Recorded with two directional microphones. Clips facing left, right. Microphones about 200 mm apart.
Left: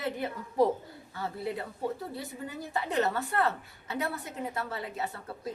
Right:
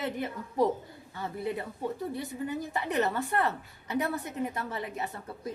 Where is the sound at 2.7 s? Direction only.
15° right (ahead or behind).